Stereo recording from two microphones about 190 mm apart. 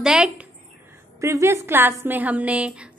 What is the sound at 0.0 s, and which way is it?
Speech, 5° right (ahead or behind).